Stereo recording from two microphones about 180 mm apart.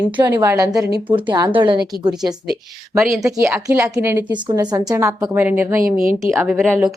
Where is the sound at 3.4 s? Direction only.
15° right (ahead or behind).